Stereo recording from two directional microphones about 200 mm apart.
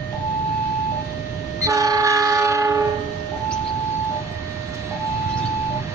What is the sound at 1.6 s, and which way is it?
Train, 15° right (ahead or behind).